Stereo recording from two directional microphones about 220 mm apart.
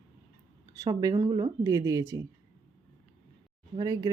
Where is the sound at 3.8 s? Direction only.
15° right (ahead or behind).